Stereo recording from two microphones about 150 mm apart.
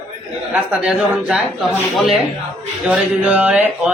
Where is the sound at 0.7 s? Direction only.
5° right (ahead or behind).